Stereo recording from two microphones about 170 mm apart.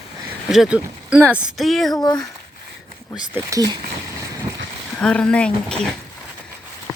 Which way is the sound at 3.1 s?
15° right (ahead or behind).